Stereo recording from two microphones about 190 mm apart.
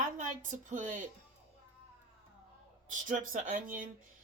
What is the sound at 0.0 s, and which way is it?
A woman's voice, 40° right (ahead or behind).